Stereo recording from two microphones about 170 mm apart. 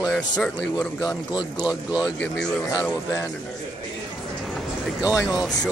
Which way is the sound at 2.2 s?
Centre (ahead or behind).